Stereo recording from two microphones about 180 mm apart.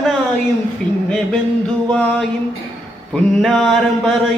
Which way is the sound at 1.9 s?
5° left (ahead or behind).